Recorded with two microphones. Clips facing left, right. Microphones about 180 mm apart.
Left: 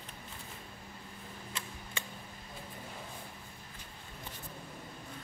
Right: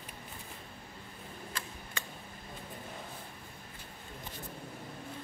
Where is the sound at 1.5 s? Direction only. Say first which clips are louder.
Right 1 dB; 25° left (ahead or behind).